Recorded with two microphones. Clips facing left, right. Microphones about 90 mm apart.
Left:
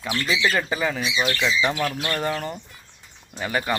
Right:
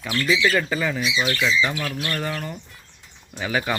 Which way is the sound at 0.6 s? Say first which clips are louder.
Even; 15° left (ahead or behind).